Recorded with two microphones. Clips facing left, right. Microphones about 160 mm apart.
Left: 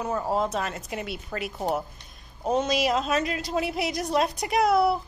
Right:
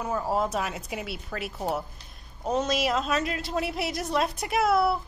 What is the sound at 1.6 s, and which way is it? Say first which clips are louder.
Speech: left 2 dB; 20° left (ahead or behind).